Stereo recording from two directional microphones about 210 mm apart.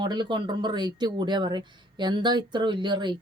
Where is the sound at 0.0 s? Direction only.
20° right (ahead or behind).